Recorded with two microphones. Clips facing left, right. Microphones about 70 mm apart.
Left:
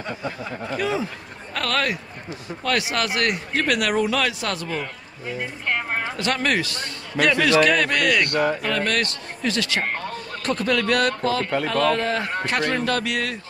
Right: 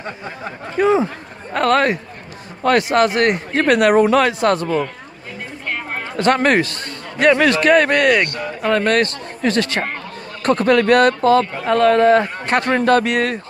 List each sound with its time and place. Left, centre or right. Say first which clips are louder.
0.7 s speech: right 11 dB; right
6.1 s speech: right 10 dB; right
8.3 s speech: left 6 dB; left
8.6 s speech: right 7 dB; right